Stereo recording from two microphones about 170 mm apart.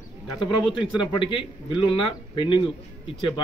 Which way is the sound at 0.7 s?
30° left (ahead or behind).